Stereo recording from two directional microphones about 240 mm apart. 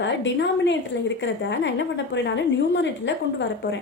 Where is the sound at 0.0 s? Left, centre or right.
Left.